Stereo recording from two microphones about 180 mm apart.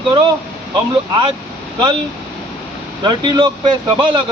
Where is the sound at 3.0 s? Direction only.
25° right (ahead or behind).